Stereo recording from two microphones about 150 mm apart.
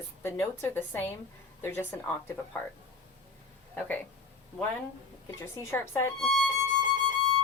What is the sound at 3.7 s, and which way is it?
Speech, 10° left (ahead or behind).